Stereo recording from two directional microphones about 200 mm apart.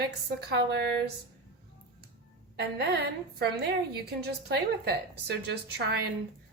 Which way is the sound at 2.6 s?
55° right (ahead or behind).